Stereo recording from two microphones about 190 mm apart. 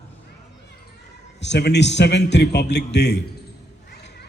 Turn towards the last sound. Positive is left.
turn(degrees=65)  # may be behind; listen again after turning